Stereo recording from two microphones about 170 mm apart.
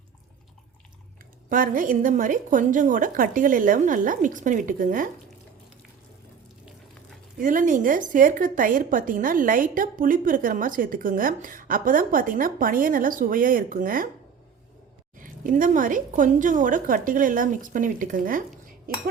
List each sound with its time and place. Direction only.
1.5 s a woman's voice: 55° right (ahead or behind)
7.3 s a woman's voice: 50° right (ahead or behind)
15.2 s a woman's voice: 50° right (ahead or behind)